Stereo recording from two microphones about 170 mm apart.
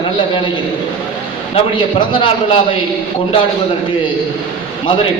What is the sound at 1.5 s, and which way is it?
A man's voice, 30° left (ahead or behind).